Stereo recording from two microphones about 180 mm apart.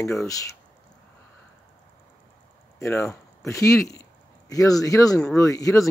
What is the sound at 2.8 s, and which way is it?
Speech, 15° left (ahead or behind).